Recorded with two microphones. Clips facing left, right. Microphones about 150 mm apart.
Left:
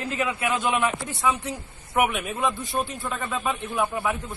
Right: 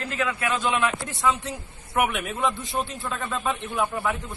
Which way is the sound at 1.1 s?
Centre (ahead or behind).